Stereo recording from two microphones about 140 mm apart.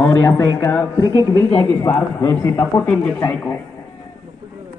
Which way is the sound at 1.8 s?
25° left (ahead or behind).